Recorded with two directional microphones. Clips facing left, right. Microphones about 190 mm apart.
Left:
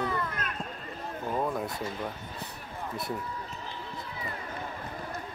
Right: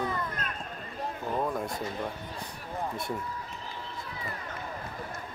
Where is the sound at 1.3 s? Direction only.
5° left (ahead or behind).